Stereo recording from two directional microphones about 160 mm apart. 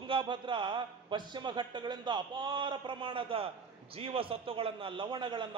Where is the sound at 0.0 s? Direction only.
30° right (ahead or behind).